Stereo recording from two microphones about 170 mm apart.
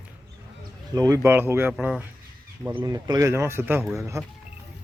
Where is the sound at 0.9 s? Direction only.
20° right (ahead or behind).